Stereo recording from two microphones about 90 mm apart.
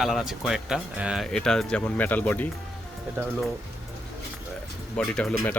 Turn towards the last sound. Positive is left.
turn(degrees=5)  # may be behind; listen again after turning